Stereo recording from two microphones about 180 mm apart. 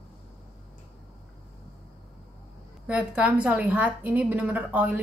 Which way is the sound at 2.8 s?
5° right (ahead or behind).